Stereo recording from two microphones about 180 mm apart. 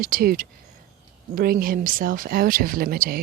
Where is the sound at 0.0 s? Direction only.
55° right (ahead or behind).